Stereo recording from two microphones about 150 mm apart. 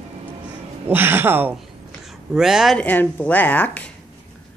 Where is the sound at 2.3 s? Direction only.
5° right (ahead or behind).